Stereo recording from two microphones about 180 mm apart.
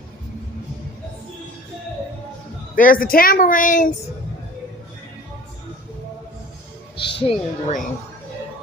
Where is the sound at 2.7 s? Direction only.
50° left (ahead or behind).